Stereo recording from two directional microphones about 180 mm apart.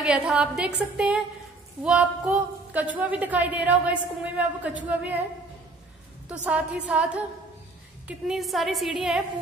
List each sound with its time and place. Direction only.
0.0 s a woman's voice: 5° right (ahead or behind)
6.2 s a woman's voice: 5° right (ahead or behind)
8.1 s a woman's voice: centre (ahead or behind)